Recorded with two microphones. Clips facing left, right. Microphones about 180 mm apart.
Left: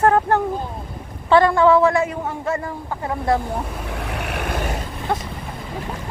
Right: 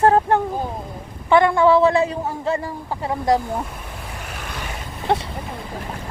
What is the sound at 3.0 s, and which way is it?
Speech, 20° right (ahead or behind).